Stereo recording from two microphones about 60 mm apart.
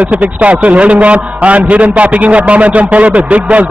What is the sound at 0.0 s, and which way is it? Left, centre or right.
A man's voice, right.